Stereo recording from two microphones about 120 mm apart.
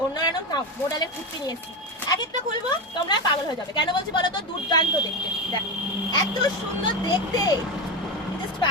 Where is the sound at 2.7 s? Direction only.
35° left (ahead or behind).